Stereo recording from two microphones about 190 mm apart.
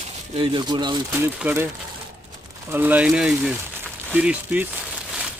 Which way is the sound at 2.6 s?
10° right (ahead or behind).